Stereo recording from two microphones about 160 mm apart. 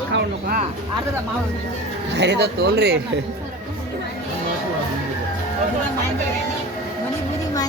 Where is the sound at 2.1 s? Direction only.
90° right.